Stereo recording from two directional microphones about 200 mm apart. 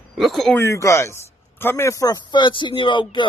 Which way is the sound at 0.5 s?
15° left (ahead or behind).